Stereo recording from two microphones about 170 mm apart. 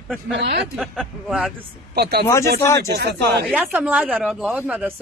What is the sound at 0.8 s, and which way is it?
Speech, centre (ahead or behind).